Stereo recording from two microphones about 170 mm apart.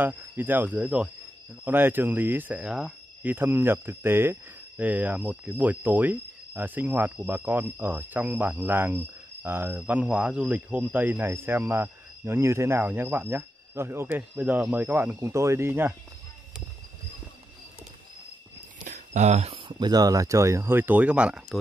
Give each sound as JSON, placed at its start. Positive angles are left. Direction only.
{"t": 0.0, "sound": "speech", "side_deg": -10}
{"t": 18.9, "sound": "speech", "side_deg": -45}